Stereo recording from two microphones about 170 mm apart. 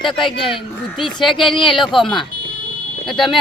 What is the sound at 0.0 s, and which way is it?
Speech, 30° left (ahead or behind).